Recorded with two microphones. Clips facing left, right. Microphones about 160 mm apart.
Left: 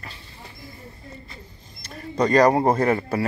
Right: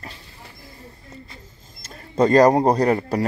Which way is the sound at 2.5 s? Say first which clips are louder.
Right 2 dB; 20° right (ahead or behind).